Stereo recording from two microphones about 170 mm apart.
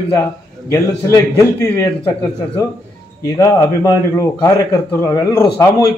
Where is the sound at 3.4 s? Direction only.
20° left (ahead or behind).